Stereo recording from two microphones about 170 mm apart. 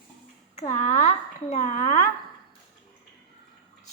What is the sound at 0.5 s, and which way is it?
Speech, 45° left (ahead or behind).